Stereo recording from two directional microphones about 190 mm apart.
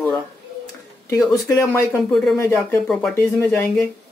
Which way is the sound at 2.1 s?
Centre (ahead or behind).